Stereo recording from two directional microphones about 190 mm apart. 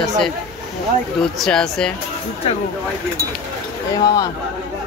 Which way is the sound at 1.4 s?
5° left (ahead or behind).